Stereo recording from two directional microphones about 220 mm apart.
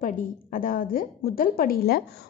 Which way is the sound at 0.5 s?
40° left (ahead or behind).